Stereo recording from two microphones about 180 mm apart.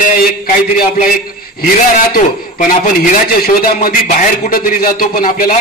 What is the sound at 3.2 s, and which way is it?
A man's voice, 55° left (ahead or behind).